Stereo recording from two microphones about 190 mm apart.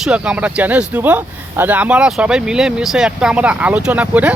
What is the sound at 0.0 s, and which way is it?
Speech, 5° right (ahead or behind).